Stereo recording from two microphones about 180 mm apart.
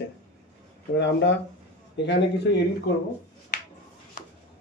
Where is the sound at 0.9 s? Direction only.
70° left (ahead or behind).